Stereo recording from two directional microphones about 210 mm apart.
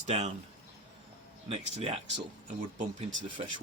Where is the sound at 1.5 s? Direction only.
30° right (ahead or behind).